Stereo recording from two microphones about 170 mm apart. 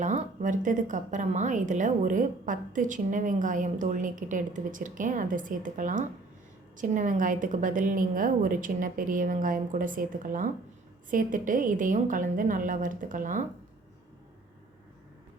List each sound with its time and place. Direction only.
0.0 s a woman's voice: 45° right (ahead or behind)